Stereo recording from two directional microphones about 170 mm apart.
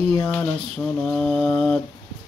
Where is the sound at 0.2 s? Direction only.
10° left (ahead or behind).